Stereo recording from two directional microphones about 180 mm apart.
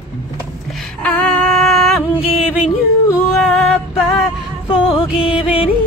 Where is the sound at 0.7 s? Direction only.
5° left (ahead or behind).